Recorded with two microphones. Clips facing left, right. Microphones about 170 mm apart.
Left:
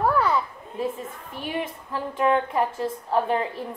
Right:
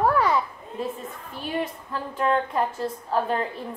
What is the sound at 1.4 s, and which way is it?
A woman's voice, 15° left (ahead or behind).